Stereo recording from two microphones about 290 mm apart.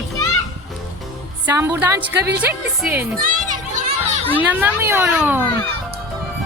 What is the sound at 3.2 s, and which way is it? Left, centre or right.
Speech, right.